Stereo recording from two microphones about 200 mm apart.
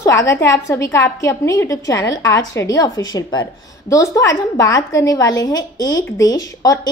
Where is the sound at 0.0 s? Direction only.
15° left (ahead or behind).